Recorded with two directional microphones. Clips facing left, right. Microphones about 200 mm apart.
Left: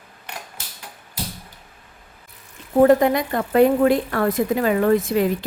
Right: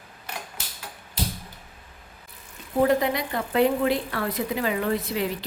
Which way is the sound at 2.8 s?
50° left (ahead or behind).